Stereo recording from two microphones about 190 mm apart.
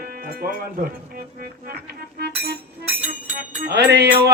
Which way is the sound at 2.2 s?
55° right (ahead or behind).